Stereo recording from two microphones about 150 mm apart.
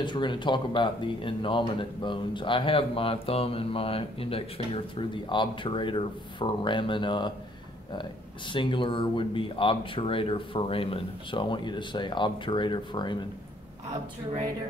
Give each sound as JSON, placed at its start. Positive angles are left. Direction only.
{"t": 0.0, "sound": "speech", "side_deg": 30}
{"t": 8.5, "sound": "speech", "side_deg": 35}